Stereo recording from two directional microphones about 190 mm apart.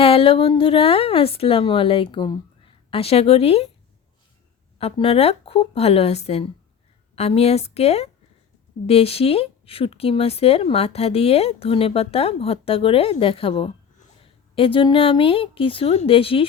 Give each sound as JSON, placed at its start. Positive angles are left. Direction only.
{"t": 0.0, "sound": "a woman's voice", "side_deg": 30}
{"t": 4.8, "sound": "a woman's voice", "side_deg": 30}